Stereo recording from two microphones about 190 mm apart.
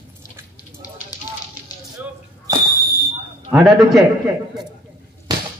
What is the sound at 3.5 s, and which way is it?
Speech, centre (ahead or behind).